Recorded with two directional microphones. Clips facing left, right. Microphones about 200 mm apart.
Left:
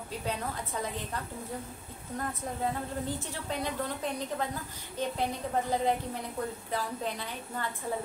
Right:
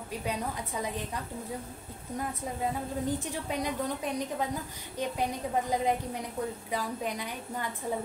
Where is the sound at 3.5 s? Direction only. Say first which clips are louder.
Right 1 dB; 15° right (ahead or behind).